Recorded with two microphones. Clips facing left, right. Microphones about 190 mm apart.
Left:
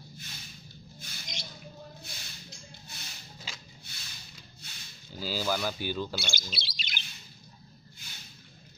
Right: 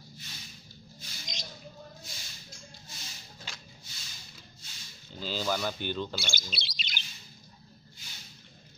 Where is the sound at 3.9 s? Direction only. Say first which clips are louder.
Left 1 dB; 65° left (ahead or behind).